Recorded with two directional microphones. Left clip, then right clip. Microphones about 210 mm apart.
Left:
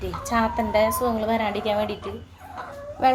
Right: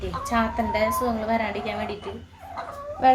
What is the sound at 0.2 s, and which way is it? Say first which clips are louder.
A woman's voice: left 1 dB; 15° left (ahead or behind).